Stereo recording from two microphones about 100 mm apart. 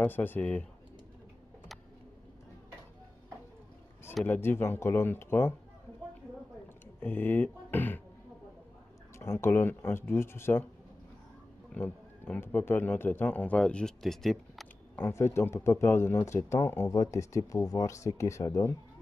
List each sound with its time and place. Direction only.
0.0 s speech: 20° left (ahead or behind)
4.2 s speech: 20° left (ahead or behind)
7.0 s speech: 20° left (ahead or behind)
9.2 s speech: 25° left (ahead or behind)
11.7 s a man's voice: 20° left (ahead or behind); by 14.7 s 5° left (ahead or behind)
15.0 s speech: 25° left (ahead or behind)